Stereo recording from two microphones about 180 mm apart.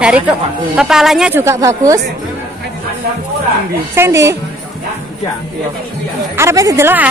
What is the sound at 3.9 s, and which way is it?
Speech, 15° right (ahead or behind).